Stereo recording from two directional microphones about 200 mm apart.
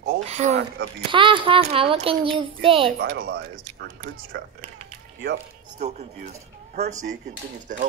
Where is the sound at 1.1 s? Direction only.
25° right (ahead or behind).